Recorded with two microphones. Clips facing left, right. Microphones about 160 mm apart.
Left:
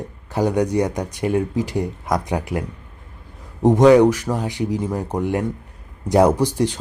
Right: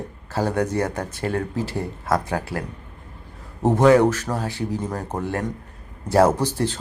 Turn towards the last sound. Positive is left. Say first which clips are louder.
# left 3 dB
turn(degrees=15)  # may be behind; listen again after turning